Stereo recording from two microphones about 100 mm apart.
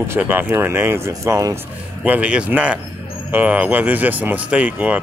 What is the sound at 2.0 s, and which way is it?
Speech, 10° right (ahead or behind).